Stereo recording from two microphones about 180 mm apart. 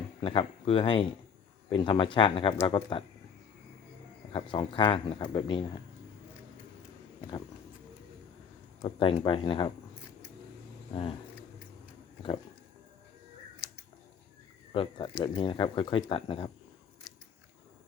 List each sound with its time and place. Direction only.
0.2 s speech: 30° left (ahead or behind)
4.3 s speech: 30° left (ahead or behind)
8.8 s speech: 30° left (ahead or behind)
14.7 s speech: 30° left (ahead or behind)